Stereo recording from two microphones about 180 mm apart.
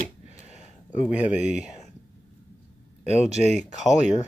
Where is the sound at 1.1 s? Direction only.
40° left (ahead or behind).